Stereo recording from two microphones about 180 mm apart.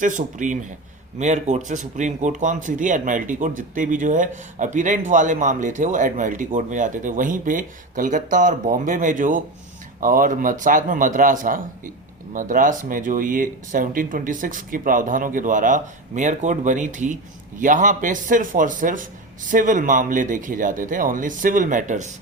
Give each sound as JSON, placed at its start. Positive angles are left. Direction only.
{"t": 0.0, "sound": "speech", "side_deg": -45}